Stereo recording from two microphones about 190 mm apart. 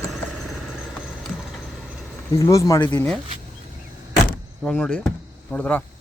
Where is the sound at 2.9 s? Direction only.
5° left (ahead or behind).